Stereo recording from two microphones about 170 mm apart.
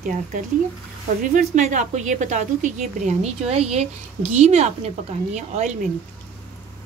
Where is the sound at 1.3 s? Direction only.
45° right (ahead or behind).